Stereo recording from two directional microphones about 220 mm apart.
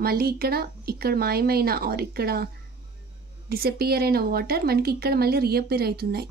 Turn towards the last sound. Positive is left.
turn(degrees=-45)  # may be behind; listen again after turning